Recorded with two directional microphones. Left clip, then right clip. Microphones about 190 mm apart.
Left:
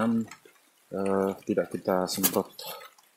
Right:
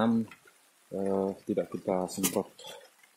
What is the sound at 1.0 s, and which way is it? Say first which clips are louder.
Speech: left 3 dB; 15° left (ahead or behind).